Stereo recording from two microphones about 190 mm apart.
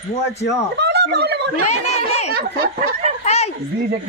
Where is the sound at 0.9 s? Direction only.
60° right (ahead or behind).